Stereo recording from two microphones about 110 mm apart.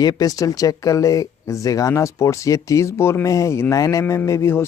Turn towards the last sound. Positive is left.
turn(degrees=25)  # may be behind; listen again after turning